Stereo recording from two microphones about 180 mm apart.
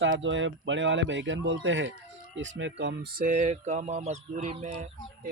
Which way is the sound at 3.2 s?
40° right (ahead or behind).